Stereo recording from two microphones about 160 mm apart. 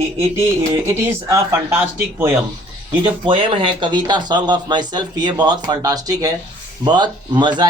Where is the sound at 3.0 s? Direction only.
30° right (ahead or behind).